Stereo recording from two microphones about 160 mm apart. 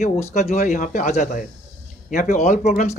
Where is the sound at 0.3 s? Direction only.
45° left (ahead or behind).